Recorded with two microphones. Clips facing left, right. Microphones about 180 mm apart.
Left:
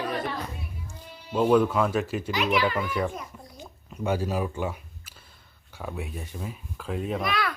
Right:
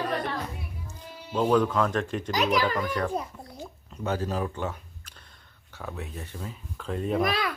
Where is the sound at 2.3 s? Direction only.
40° right (ahead or behind).